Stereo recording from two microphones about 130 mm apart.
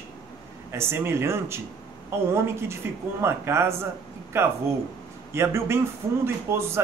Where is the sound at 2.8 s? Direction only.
20° right (ahead or behind).